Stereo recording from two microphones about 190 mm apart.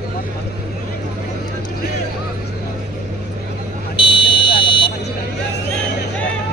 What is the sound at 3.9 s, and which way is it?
Vehicle, 25° left (ahead or behind).